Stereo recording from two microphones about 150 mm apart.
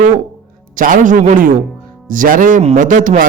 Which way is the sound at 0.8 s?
60° right (ahead or behind).